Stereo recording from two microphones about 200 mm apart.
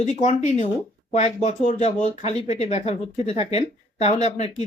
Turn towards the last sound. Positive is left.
turn(degrees=35)  # may be behind; listen again after turning